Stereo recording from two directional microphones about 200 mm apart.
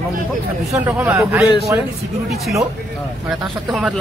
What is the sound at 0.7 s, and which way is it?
Speech, 10° right (ahead or behind).